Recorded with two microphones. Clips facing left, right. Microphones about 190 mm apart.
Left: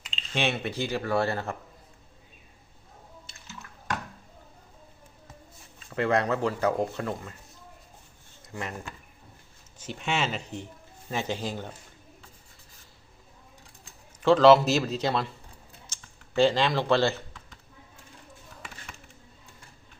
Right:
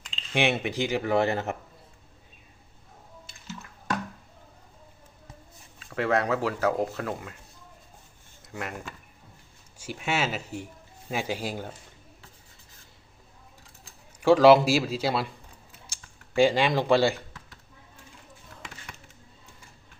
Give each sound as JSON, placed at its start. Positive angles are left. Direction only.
{"t": 0.3, "sound": "speech", "side_deg": -15}
{"t": 5.8, "sound": "speech", "side_deg": 0}
{"t": 9.7, "sound": "speech", "side_deg": -10}
{"t": 14.2, "sound": "speech", "side_deg": -10}